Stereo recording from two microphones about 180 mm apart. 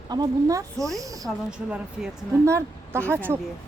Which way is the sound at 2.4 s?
15° right (ahead or behind).